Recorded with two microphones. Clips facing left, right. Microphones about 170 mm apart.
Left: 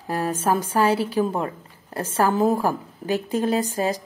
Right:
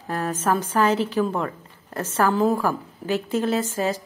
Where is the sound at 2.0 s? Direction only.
15° left (ahead or behind).